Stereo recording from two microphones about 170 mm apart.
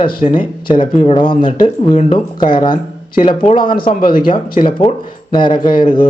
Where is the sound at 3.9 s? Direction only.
55° left (ahead or behind).